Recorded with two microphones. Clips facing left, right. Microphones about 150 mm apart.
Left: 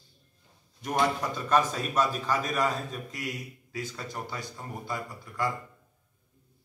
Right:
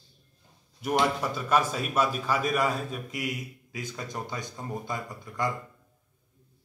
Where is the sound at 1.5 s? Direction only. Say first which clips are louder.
Even; 10° right (ahead or behind).